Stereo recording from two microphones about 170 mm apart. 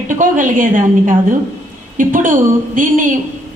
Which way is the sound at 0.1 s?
50° right (ahead or behind).